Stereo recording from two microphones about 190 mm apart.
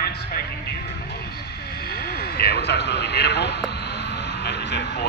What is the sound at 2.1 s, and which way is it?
A man's voice, 55° left (ahead or behind).